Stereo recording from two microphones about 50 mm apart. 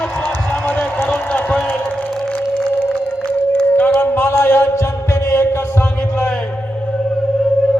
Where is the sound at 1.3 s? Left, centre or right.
Left.